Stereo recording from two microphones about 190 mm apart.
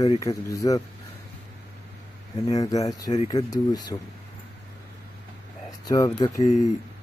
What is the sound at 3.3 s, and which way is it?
Speech, 20° left (ahead or behind).